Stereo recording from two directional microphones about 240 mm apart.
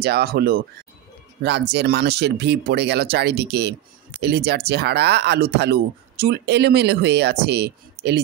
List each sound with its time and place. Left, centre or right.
0.0 s speech: right